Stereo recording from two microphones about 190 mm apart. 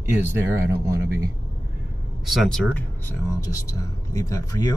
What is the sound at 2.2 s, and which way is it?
Speech, centre (ahead or behind).